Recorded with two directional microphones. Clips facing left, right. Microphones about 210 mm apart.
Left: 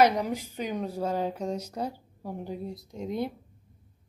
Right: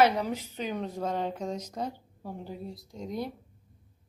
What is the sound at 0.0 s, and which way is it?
A woman's voice, 15° left (ahead or behind).